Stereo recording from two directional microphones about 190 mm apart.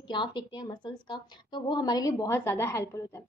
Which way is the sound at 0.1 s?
25° left (ahead or behind).